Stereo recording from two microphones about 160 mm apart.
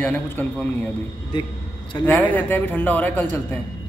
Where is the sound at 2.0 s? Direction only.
10° left (ahead or behind).